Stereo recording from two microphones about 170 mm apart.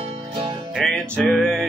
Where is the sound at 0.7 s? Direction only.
5° left (ahead or behind).